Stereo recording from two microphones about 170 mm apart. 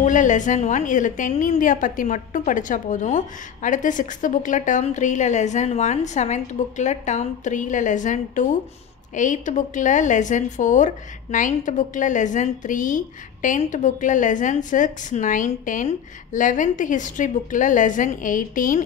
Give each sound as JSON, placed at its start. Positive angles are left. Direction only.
{"t": 0.0, "sound": "a woman's voice", "side_deg": 45}